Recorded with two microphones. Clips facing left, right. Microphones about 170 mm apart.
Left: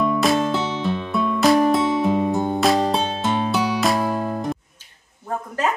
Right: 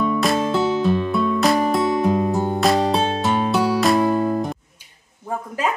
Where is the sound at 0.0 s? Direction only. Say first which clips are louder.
Left 1 dB; centre (ahead or behind).